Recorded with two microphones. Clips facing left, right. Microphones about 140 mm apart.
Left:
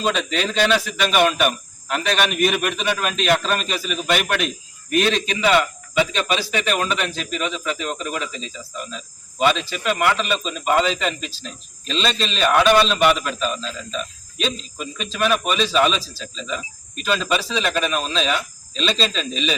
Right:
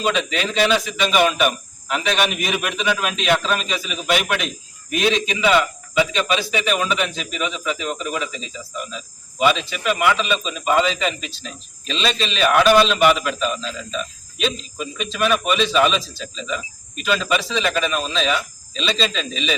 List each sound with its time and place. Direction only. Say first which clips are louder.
0.0 s a man's voice: even; centre (ahead or behind)